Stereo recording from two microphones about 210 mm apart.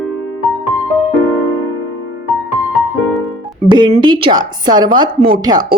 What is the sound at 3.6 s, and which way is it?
Speech, 20° right (ahead or behind).